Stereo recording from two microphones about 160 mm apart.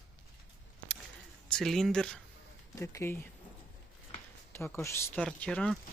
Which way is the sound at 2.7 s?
15° left (ahead or behind).